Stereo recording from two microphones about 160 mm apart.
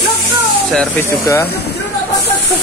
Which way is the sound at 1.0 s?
15° left (ahead or behind).